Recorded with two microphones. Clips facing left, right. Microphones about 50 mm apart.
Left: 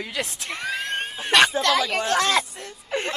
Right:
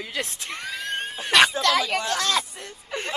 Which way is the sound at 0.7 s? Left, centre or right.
Left.